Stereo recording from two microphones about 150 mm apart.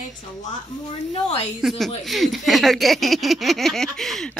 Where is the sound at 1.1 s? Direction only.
40° left (ahead or behind).